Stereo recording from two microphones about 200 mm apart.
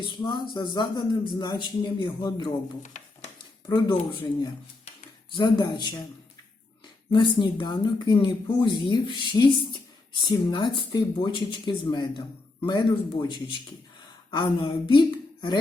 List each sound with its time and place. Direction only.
0.0 s speech: 20° left (ahead or behind)
5.3 s speech: 20° left (ahead or behind)
7.1 s a woman's voice: 25° left (ahead or behind)